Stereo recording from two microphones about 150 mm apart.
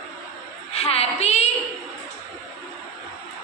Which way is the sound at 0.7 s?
45° left (ahead or behind).